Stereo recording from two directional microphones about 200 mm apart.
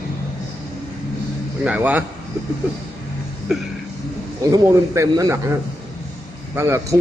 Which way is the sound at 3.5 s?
Centre (ahead or behind).